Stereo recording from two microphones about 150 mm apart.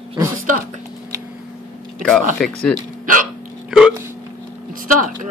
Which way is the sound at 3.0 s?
65° right (ahead or behind).